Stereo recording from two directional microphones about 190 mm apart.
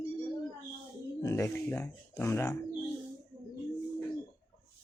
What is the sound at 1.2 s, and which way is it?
Speech, 15° left (ahead or behind).